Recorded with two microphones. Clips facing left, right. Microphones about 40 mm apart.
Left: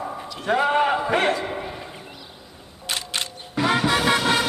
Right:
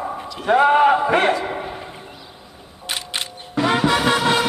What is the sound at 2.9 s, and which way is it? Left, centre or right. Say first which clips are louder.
Music: right 1 dB; centre.